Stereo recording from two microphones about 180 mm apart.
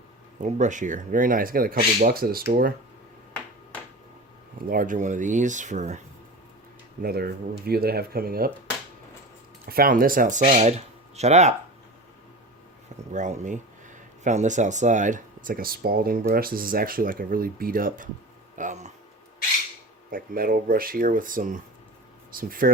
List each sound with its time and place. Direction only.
0.4 s speech: 45° right (ahead or behind)
4.7 s speech: 50° right (ahead or behind)
7.0 s speech: 55° right (ahead or behind)
9.6 s speech: 55° right (ahead or behind)
10.4 s speech: 35° right (ahead or behind)
13.1 s speech: 45° right (ahead or behind)
20.1 s speech: 50° right (ahead or behind)